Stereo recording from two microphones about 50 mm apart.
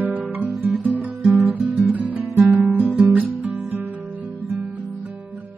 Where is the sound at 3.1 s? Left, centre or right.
Right.